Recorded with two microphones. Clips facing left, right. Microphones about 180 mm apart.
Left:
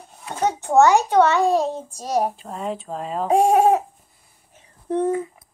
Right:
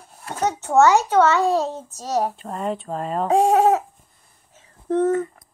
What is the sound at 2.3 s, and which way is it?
Speech, centre (ahead or behind).